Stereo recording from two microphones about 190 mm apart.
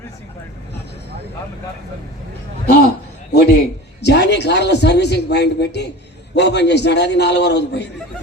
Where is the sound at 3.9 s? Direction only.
60° left (ahead or behind).